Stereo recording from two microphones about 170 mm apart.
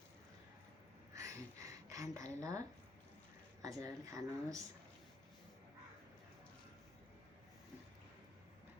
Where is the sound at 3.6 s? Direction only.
20° right (ahead or behind).